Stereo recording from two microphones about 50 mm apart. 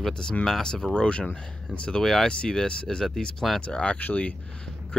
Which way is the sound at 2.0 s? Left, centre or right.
Centre.